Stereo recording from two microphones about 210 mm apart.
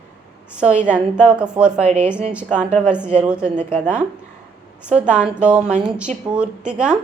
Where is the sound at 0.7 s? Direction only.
35° right (ahead or behind).